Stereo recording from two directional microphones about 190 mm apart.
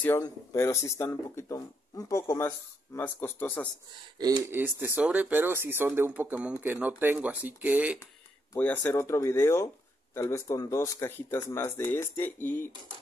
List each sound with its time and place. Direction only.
0.2 s speech: 15° left (ahead or behind)
4.2 s speech: 10° right (ahead or behind)
8.5 s speech: 10° left (ahead or behind)